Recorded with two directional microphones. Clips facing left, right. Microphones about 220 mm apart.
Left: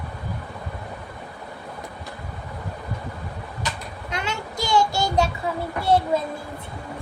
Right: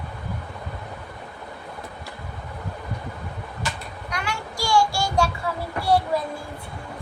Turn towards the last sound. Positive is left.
turn(degrees=20)  # may be behind; listen again after turning